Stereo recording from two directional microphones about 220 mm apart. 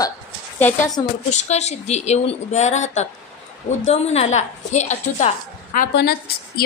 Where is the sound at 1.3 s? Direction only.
30° left (ahead or behind).